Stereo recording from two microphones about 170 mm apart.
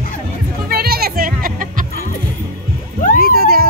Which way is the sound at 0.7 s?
65° right (ahead or behind).